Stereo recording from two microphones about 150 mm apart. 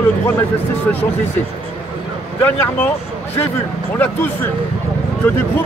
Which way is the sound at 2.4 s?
10° left (ahead or behind).